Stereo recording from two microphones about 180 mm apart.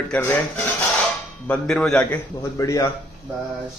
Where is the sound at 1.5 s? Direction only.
5° left (ahead or behind).